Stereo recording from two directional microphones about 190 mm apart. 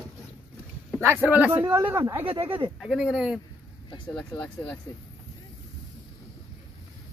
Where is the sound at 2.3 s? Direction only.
30° right (ahead or behind).